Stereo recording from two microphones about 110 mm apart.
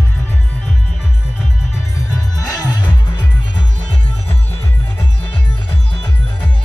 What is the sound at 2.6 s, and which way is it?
Music, 40° left (ahead or behind).